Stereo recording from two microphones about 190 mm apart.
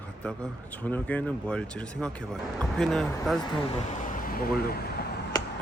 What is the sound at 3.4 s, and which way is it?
Speech, 25° left (ahead or behind).